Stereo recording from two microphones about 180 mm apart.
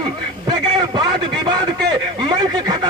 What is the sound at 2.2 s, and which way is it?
Speech, 20° right (ahead or behind).